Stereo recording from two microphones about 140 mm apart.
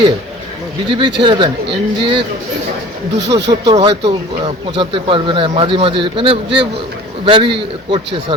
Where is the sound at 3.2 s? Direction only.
30° right (ahead or behind).